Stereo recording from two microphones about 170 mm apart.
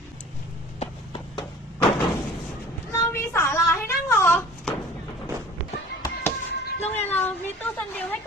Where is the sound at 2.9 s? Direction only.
15° left (ahead or behind).